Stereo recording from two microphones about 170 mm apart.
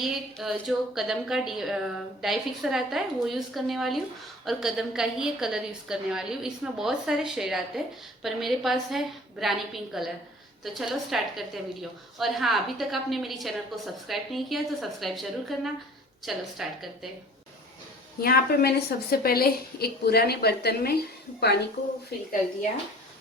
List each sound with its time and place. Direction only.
0.0 s a woman's voice: centre (ahead or behind)
18.2 s a woman's voice: 65° left (ahead or behind)